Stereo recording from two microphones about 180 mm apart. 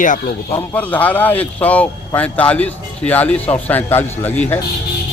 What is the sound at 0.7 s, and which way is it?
A man's voice, 10° left (ahead or behind).